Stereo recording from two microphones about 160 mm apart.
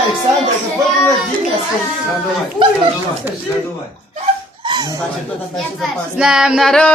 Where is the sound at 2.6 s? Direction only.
30° right (ahead or behind).